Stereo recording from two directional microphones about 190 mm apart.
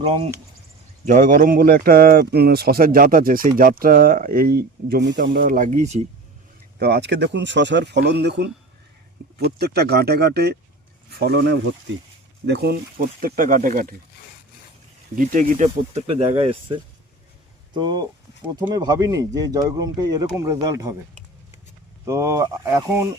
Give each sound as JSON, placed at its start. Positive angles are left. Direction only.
{"t": 0.0, "sound": "speech", "side_deg": -30}
{"t": 1.0, "sound": "speech", "side_deg": -40}
{"t": 6.7, "sound": "speech", "side_deg": -55}
{"t": 15.1, "sound": "speech", "side_deg": -45}
{"t": 22.0, "sound": "speech", "side_deg": -15}